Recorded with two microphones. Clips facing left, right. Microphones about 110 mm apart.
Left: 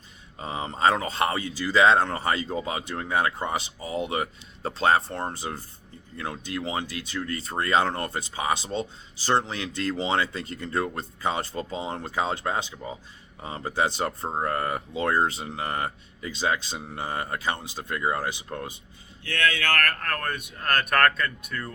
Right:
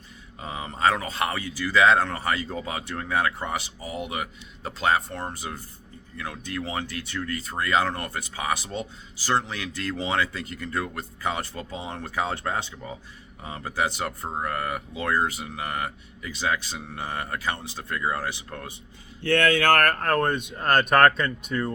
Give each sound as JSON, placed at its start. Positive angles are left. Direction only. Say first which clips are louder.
{"t": 0.3, "sound": "speech", "louder": "left 2 dB", "side_deg": 30}
{"t": 13.4, "sound": "speech", "louder": "left 1 dB", "side_deg": 25}
{"t": 19.2, "sound": "speech", "louder": "right 6 dB", "side_deg": -50}
{"t": 20.1, "sound": "speech", "louder": "right 7 dB", "side_deg": -25}